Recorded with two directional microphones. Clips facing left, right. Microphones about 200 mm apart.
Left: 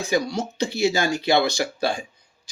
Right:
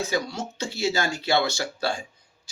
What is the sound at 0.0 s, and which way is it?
Speech, 15° left (ahead or behind).